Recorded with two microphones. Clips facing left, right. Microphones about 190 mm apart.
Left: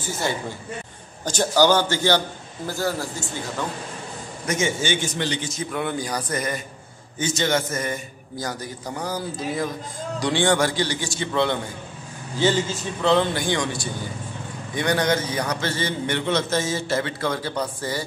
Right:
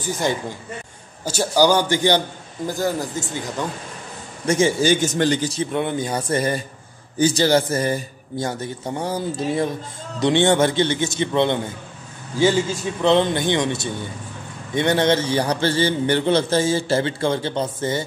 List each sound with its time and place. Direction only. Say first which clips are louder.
0.0 s a man's voice: right 4 dB; 15° right (ahead or behind)
4.5 s a man's voice: right 7 dB; 35° right (ahead or behind)
5.5 s a man's voice: right 4 dB; 25° right (ahead or behind)
13.0 s a man's voice: right 3 dB; 20° right (ahead or behind)